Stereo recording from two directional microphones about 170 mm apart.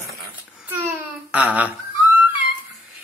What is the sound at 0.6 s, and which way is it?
Babbling, 10° right (ahead or behind).